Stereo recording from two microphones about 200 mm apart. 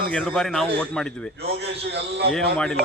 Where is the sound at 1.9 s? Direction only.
55° right (ahead or behind).